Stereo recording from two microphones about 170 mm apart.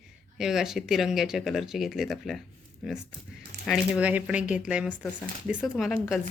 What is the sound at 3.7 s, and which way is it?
A woman's voice, 5° right (ahead or behind).